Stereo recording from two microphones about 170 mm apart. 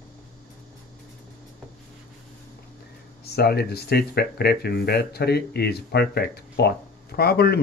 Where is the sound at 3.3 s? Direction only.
70° left (ahead or behind).